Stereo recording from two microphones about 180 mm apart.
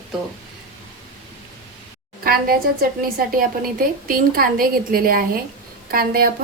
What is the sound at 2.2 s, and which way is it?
A woman's voice, 55° right (ahead or behind).